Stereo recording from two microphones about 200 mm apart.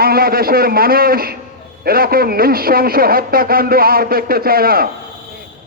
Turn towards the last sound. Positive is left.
turn(degrees=-50)  # may be behind; listen again after turning